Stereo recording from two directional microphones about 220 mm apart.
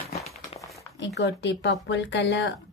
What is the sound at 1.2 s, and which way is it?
Speech, 50° left (ahead or behind).